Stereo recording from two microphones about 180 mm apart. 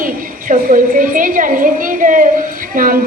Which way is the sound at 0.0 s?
50° right (ahead or behind).